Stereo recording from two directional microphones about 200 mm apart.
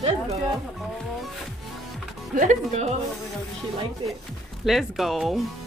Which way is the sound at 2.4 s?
35° right (ahead or behind).